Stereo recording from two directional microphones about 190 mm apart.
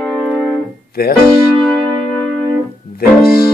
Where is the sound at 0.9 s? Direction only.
55° left (ahead or behind).